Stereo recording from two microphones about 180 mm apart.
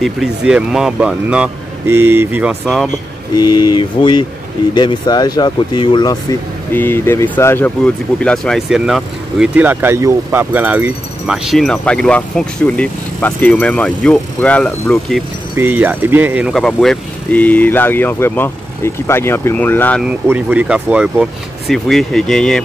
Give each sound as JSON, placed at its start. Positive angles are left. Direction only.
{"t": 0.0, "sound": "speech", "side_deg": 0}
{"t": 3.3, "sound": "speech", "side_deg": 25}
{"t": 6.7, "sound": "speech", "side_deg": 10}
{"t": 15.5, "sound": "speech", "side_deg": -10}
{"t": 20.0, "sound": "speech", "side_deg": -5}